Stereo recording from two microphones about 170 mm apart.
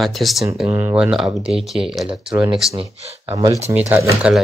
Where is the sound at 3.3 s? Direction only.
20° right (ahead or behind).